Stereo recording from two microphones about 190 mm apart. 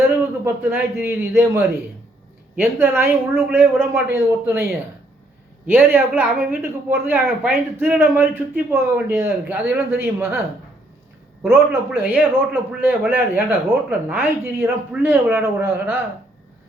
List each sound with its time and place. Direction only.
0.4 s a woman's voice: 10° right (ahead or behind)
11.4 s a woman's voice: 10° right (ahead or behind)